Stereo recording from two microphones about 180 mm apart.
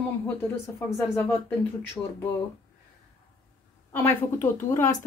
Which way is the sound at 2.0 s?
10° left (ahead or behind).